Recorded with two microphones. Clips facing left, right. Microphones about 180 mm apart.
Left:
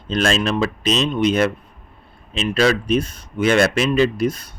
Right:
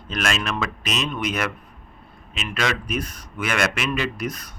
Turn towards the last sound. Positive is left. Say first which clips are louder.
# left 9 dB
turn(degrees=30)  # may be behind; listen again after turning